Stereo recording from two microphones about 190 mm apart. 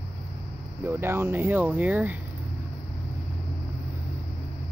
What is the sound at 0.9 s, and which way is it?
Speech, 10° right (ahead or behind).